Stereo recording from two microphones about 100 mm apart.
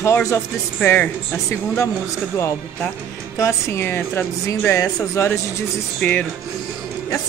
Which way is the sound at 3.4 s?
25° left (ahead or behind).